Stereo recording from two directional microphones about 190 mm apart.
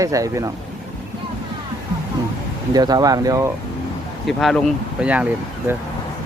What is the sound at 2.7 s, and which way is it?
Speech, 20° right (ahead or behind).